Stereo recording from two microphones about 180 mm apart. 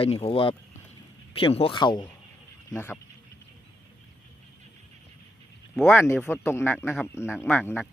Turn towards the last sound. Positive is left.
turn(degrees=10)  # may be behind; listen again after turning